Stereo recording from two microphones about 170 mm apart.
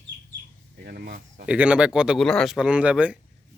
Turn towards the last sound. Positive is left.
turn(degrees=-5)  # may be behind; listen again after turning